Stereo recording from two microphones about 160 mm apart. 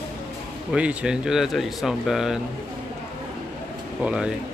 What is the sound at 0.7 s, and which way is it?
Speech, 5° right (ahead or behind).